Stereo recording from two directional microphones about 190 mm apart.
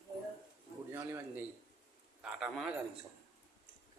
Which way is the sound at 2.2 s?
Centre (ahead or behind).